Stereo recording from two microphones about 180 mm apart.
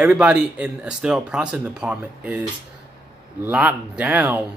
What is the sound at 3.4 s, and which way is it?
A man's voice, 10° right (ahead or behind).